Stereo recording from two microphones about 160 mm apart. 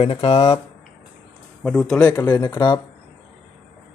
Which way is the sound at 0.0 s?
40° left (ahead or behind).